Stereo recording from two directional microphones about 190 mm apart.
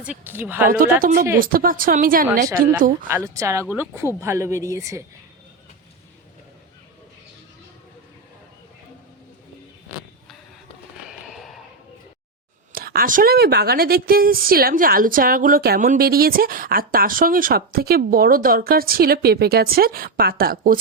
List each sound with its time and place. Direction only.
0.0 s speech: 10° right (ahead or behind)
0.8 s a woman's voice: 50° right (ahead or behind)
3.1 s speech: 15° right (ahead or behind)
11.0 s a sound: centre (ahead or behind)
12.7 s a woman's voice: 50° right (ahead or behind)